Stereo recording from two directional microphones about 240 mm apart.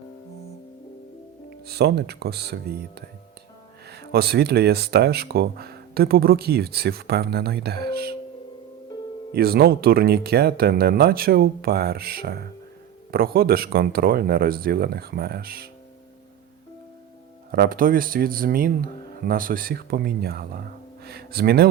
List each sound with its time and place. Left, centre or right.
1.6 s speech: right
9.3 s speech: right
17.5 s speech: right